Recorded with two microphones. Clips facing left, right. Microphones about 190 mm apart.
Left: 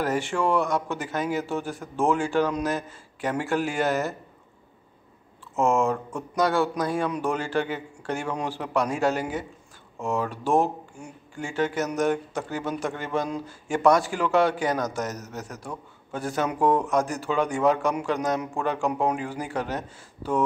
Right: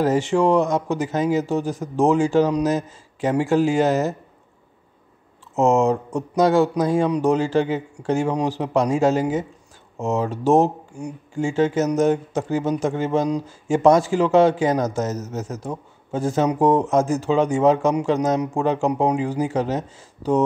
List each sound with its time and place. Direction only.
0.0 s speech: 20° right (ahead or behind)
1.8 s speech: 40° right (ahead or behind)
2.6 s speech: 20° right (ahead or behind)
5.6 s speech: 20° right (ahead or behind)
8.3 s speech: 35° right (ahead or behind)
8.5 s speech: 25° right (ahead or behind)
11.4 s speech: 25° right (ahead or behind)